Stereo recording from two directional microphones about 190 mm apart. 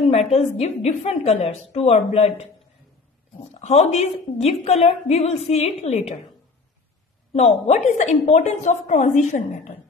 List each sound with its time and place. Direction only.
0.3 s a woman's voice: 35° left (ahead or behind)
3.5 s a woman's voice: 35° left (ahead or behind)
7.3 s a woman's voice: 35° left (ahead or behind)